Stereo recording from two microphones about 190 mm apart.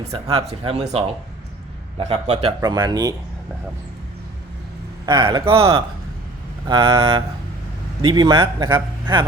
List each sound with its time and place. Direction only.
0.0 s speech: 30° right (ahead or behind)
2.0 s speech: 35° right (ahead or behind)
2.6 s speech: 20° right (ahead or behind)
5.0 s speech: 25° right (ahead or behind)